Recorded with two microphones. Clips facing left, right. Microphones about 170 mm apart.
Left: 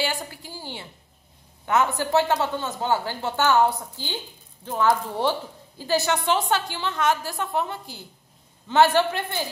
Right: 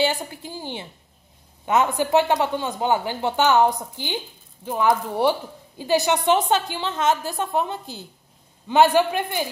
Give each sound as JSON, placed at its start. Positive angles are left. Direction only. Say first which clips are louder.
{"t": 0.0, "sound": "a woman's voice", "louder": "right 5 dB", "side_deg": -20}